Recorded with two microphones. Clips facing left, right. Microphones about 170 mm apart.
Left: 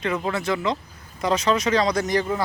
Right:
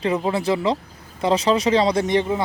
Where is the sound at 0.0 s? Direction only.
30° right (ahead or behind).